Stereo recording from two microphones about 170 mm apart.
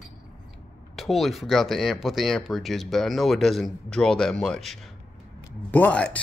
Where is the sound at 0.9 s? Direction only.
Centre (ahead or behind).